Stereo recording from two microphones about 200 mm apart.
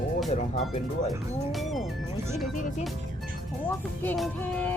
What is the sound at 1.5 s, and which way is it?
Speech, centre (ahead or behind).